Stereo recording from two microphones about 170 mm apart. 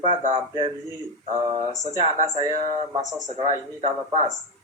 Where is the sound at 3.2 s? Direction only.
40° right (ahead or behind).